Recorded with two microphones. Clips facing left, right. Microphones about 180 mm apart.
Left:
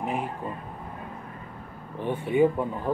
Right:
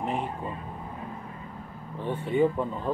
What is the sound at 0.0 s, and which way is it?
Vehicle, 5° left (ahead or behind).